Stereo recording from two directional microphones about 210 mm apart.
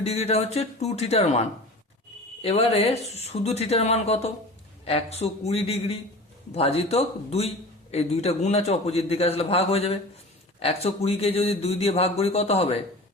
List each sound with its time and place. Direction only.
0.0 s a man's voice: 30° left (ahead or behind)